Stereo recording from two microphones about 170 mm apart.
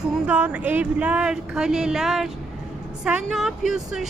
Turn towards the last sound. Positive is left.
turn(degrees=-5)  # may be behind; listen again after turning